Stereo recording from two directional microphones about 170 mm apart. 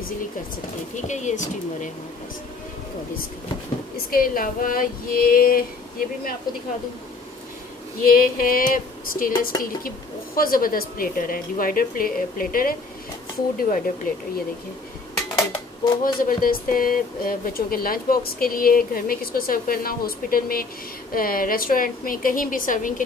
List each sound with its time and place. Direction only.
1.0 s speech: 45° left (ahead or behind)
3.9 s speech: 55° left (ahead or behind)
8.0 s speech: 55° left (ahead or behind)
16.0 s speech: 55° left (ahead or behind)